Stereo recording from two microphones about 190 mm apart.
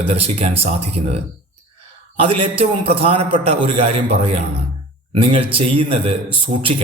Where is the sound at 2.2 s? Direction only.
30° right (ahead or behind).